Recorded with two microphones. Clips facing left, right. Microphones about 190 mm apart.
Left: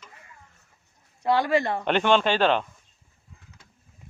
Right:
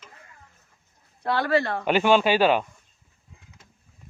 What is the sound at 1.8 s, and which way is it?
Speech, 5° right (ahead or behind).